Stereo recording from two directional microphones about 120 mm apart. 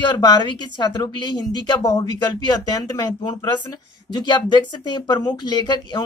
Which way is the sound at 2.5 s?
35° left (ahead or behind).